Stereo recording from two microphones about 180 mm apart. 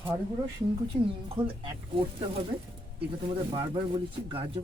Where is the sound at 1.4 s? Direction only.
25° right (ahead or behind).